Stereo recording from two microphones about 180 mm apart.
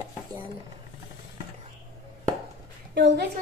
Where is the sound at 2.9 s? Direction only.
70° right (ahead or behind).